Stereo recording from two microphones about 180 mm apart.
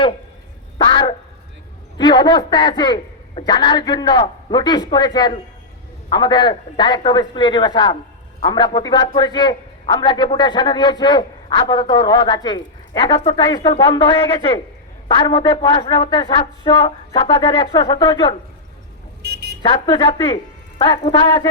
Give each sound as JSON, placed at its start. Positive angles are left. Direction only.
{"t": 0.8, "sound": "a sound", "side_deg": 25}
{"t": 2.0, "sound": "a man's voice", "side_deg": 25}
{"t": 19.2, "sound": "vehicle", "side_deg": -65}
{"t": 19.6, "sound": "a man's voice", "side_deg": 25}